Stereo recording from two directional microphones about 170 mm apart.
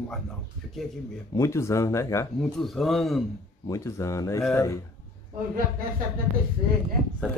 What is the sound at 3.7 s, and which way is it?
Speech, 20° left (ahead or behind).